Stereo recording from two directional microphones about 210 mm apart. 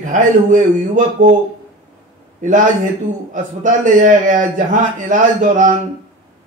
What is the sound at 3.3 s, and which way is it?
A man's voice, 40° right (ahead or behind).